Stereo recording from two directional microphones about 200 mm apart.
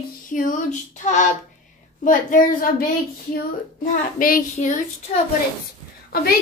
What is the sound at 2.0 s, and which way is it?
Speech, 45° left (ahead or behind).